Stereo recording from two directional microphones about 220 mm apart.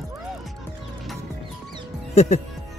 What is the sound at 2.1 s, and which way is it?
Speech, 30° left (ahead or behind).